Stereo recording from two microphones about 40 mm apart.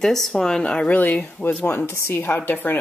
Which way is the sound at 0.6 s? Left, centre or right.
Left.